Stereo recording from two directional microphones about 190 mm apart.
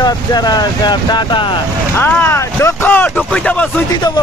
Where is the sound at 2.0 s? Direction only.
10° left (ahead or behind).